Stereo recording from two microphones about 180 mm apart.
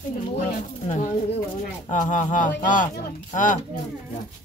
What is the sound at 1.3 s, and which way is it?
Speech, 45° left (ahead or behind).